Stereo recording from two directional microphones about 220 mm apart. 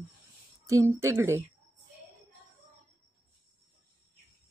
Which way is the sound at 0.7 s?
15° right (ahead or behind).